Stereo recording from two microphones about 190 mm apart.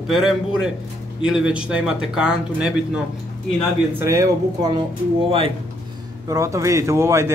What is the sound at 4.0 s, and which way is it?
Speech, 15° right (ahead or behind).